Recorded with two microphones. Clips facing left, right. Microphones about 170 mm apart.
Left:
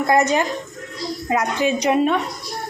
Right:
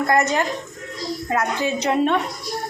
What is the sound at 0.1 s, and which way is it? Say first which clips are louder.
A woman's voice: left 4 dB; 20° left (ahead or behind).